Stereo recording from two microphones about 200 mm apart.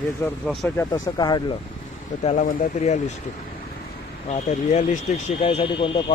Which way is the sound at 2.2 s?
35° left (ahead or behind).